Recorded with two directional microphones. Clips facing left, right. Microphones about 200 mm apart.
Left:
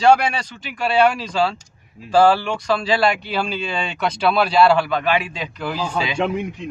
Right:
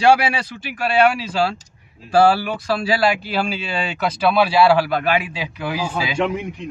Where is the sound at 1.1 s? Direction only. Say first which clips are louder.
Even; 5° right (ahead or behind).